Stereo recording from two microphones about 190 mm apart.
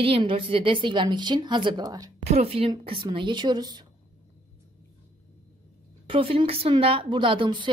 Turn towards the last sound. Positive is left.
turn(degrees=-25)  # may be behind; listen again after turning